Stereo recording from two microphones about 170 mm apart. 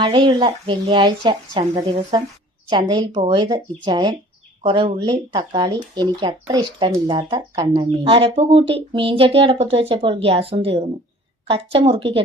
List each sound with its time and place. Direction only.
0.0 s speech: 30° right (ahead or behind)